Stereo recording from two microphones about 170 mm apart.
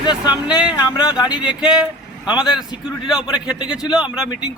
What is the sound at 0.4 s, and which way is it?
A man's voice, 5° right (ahead or behind).